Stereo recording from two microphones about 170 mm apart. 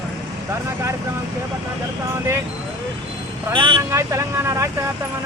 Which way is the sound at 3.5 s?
30° right (ahead or behind).